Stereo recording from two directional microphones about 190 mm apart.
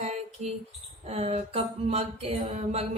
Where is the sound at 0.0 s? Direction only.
35° right (ahead or behind).